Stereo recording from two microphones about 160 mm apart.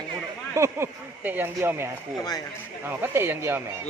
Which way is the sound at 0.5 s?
15° right (ahead or behind).